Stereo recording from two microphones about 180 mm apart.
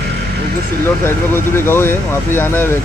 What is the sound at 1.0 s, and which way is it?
Speech, 10° left (ahead or behind).